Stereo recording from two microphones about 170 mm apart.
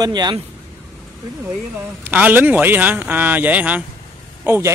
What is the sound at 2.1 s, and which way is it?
Speech, 10° right (ahead or behind).